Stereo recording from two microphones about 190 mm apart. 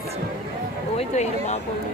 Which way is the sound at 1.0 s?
35° left (ahead or behind).